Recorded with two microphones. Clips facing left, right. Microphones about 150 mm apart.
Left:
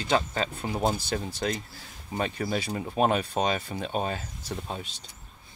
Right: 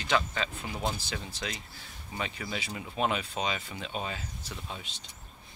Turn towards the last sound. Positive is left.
turn(degrees=40)  # may be behind; listen again after turning